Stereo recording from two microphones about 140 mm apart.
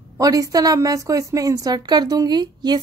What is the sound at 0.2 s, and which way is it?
A woman's voice, 25° right (ahead or behind).